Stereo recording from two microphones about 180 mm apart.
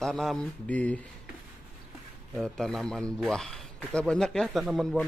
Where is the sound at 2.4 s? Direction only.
Centre (ahead or behind).